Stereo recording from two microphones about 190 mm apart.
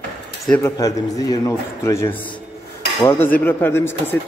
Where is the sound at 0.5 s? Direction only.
15° left (ahead or behind).